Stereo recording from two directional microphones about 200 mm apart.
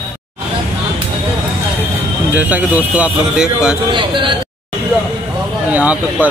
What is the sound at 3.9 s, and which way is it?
Speech, 25° right (ahead or behind).